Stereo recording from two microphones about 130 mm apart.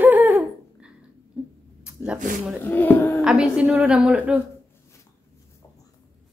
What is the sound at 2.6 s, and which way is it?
Speech, 15° left (ahead or behind).